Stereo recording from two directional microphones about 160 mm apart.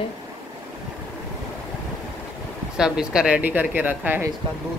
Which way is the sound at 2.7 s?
5° right (ahead or behind).